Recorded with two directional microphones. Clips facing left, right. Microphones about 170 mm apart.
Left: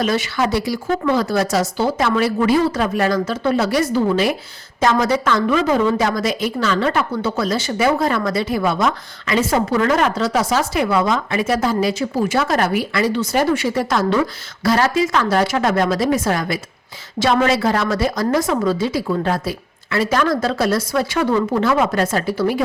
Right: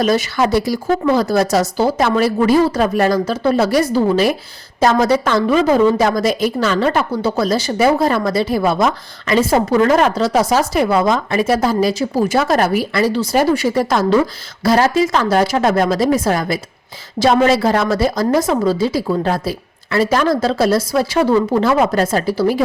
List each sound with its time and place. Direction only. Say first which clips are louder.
0.0 s a woman's voice: right 4 dB; 40° right (ahead or behind)